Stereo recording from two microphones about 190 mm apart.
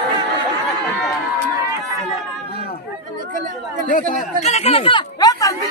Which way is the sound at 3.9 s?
40° left (ahead or behind).